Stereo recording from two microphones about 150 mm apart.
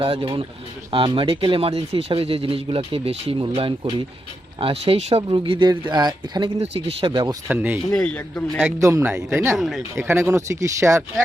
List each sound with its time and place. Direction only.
0.0 s speech: 40° right (ahead or behind)
6.6 s speech: 40° right (ahead or behind)
7.4 s speech: 15° right (ahead or behind)
7.9 s a man's voice: 5° left (ahead or behind)
8.8 s speech: 20° right (ahead or behind)
9.6 s speech: centre (ahead or behind)
9.9 s speech: 20° right (ahead or behind)